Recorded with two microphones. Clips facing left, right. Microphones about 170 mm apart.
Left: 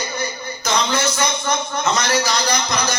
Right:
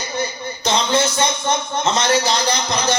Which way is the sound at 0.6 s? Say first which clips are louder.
Right 2 dB; 25° right (ahead or behind).